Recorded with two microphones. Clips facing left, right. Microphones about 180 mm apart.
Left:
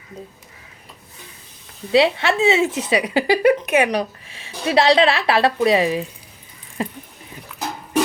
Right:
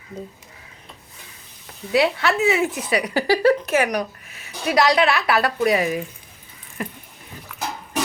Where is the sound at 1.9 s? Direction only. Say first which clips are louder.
Left 3 dB; 25° left (ahead or behind).